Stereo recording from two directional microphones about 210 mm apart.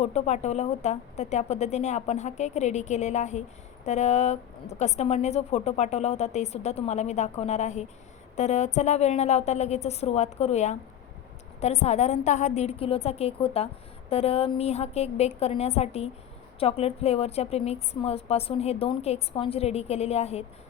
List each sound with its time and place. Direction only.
0.0 s a woman's voice: 30° left (ahead or behind)